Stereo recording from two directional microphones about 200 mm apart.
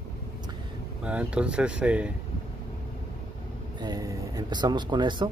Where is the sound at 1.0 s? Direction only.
5° right (ahead or behind).